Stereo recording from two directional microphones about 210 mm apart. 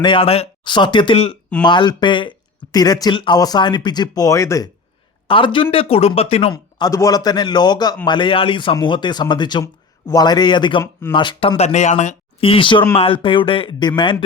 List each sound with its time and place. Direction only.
0.0 s speech: 25° left (ahead or behind)